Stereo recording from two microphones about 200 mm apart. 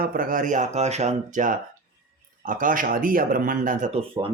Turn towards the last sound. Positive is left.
turn(degrees=-35)  # may be behind; listen again after turning